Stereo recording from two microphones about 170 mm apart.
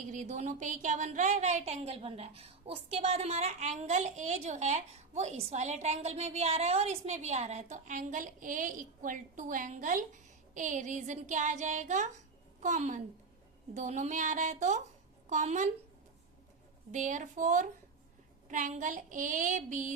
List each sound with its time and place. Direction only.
0.1 s a woman's voice: 45° right (ahead or behind)
16.9 s a woman's voice: 50° right (ahead or behind)